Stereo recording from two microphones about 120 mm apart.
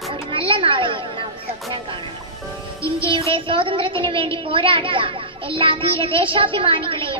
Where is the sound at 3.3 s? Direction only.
45° right (ahead or behind).